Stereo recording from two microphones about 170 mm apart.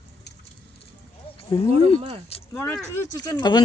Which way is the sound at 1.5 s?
30° left (ahead or behind).